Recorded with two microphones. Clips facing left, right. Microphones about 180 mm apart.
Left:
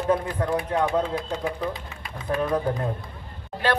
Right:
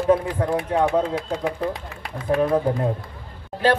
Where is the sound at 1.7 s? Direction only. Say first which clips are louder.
Right 4 dB; 75° right (ahead or behind).